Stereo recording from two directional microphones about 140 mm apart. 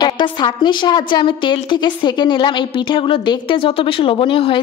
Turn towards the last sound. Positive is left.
turn(degrees=35)  # may be behind; listen again after turning